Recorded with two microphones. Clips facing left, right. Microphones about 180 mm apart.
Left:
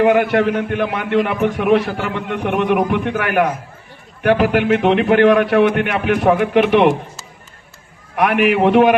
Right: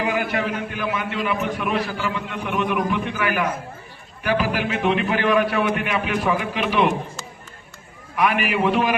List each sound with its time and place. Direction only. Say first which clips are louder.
0.0 s a man's voice: left 10 dB; 60° left (ahead or behind)
8.1 s a man's voice: left 6 dB; 60° left (ahead or behind)